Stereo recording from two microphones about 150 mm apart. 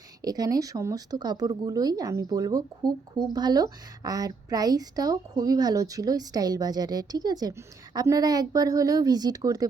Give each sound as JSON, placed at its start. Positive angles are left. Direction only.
{"t": 0.2, "sound": "a woman's voice", "side_deg": -25}